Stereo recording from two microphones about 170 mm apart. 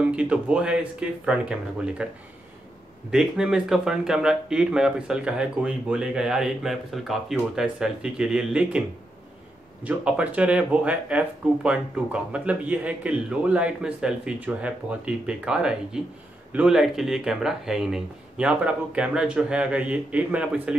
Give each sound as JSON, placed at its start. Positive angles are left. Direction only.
{"t": 0.0, "sound": "speech", "side_deg": -5}
{"t": 3.1, "sound": "speech", "side_deg": -5}
{"t": 9.8, "sound": "speech", "side_deg": -5}